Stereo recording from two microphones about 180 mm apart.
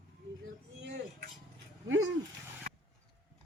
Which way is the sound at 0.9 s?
65° right (ahead or behind).